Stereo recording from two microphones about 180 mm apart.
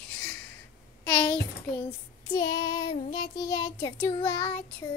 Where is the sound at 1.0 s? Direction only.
10° left (ahead or behind).